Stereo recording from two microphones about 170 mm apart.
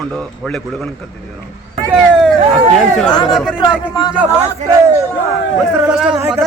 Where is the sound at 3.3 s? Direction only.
Centre (ahead or behind).